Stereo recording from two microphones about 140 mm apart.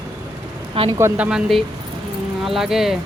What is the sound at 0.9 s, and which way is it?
Speech, 15° right (ahead or behind).